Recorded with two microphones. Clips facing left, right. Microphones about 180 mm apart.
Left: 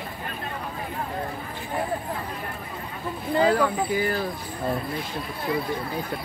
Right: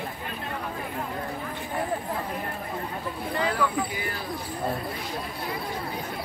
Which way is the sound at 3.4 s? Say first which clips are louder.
Left 6 dB; 30° left (ahead or behind).